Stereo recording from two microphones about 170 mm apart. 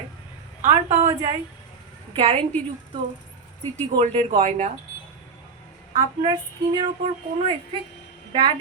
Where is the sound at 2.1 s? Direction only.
35° right (ahead or behind).